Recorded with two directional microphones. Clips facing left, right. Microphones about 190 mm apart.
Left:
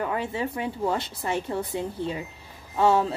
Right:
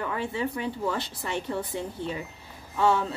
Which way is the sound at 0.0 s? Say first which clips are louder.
Left 2 dB; 20° left (ahead or behind).